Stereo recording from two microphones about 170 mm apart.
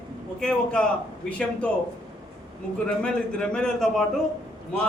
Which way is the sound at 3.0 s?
5° left (ahead or behind).